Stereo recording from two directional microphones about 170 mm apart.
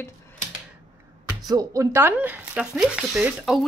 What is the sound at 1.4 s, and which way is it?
Speech, 20° right (ahead or behind).